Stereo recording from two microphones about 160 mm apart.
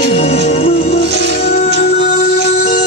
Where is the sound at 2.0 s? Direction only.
60° left (ahead or behind).